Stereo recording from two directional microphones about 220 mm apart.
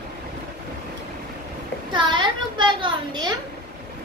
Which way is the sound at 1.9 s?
20° right (ahead or behind).